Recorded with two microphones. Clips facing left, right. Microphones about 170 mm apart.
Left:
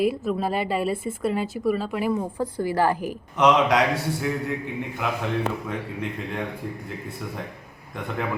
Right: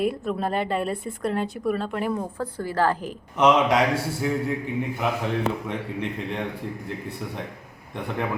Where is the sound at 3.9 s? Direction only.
30° right (ahead or behind).